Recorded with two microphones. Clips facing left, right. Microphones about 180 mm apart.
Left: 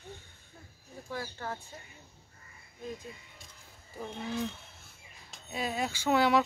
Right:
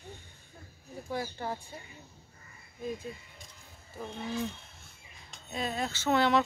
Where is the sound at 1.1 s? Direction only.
15° right (ahead or behind).